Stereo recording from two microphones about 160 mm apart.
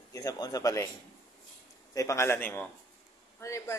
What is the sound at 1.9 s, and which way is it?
Speech, 20° left (ahead or behind).